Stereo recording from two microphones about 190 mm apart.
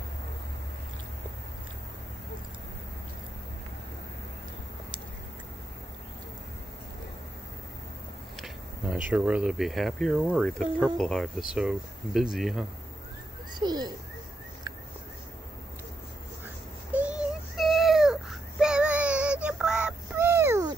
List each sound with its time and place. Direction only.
8.4 s speech: 5° right (ahead or behind)
13.6 s speech: 20° right (ahead or behind)
16.9 s child singing: 5° right (ahead or behind)